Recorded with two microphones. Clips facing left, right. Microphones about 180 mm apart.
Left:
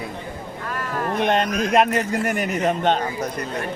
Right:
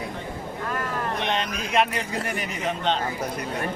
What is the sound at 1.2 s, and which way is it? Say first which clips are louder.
Speech: left 7 dB; 50° left (ahead or behind).